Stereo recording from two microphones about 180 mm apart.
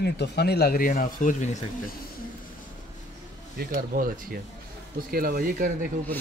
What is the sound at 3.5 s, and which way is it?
Speech, 55° right (ahead or behind).